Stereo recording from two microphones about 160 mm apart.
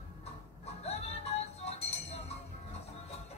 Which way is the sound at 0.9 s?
40° left (ahead or behind).